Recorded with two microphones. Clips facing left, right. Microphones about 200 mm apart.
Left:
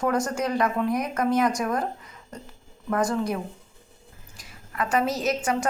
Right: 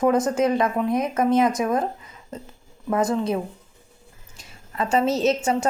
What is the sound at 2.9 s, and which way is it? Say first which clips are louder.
A woman's voice: right 3 dB; 20° right (ahead or behind).